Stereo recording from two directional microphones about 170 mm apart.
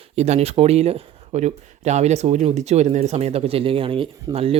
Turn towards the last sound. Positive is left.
turn(degrees=-35)  # may be behind; listen again after turning